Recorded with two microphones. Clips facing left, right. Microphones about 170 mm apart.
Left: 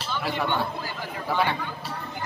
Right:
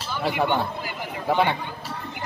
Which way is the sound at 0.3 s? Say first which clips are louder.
Right 4 dB; 15° right (ahead or behind).